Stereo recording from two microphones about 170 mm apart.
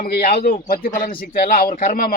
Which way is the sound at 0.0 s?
60° left (ahead or behind).